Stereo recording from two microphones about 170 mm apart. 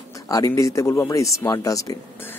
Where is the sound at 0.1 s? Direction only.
20° left (ahead or behind).